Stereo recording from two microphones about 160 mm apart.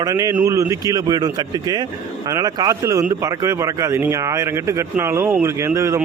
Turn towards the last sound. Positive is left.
turn(degrees=-15)  # may be behind; listen again after turning